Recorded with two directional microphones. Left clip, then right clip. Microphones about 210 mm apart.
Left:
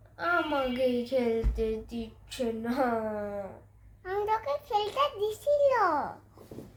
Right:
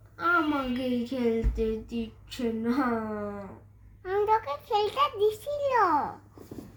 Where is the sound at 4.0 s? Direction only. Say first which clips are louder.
Right 4 dB; 20° left (ahead or behind).